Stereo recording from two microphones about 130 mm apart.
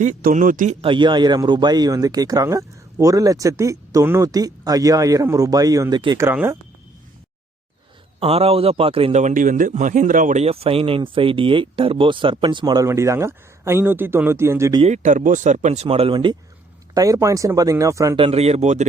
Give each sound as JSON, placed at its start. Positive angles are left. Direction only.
{"t": 0.0, "sound": "speech", "side_deg": -90}
{"t": 0.8, "sound": "speech", "side_deg": -40}
{"t": 8.2, "sound": "a man's voice", "side_deg": -50}
{"t": 9.1, "sound": "speech", "side_deg": -80}
{"t": 10.4, "sound": "speech", "side_deg": -50}
{"t": 14.8, "sound": "speech", "side_deg": -60}
{"t": 16.9, "sound": "speech", "side_deg": -25}
{"t": 18.2, "sound": "a man's voice", "side_deg": -50}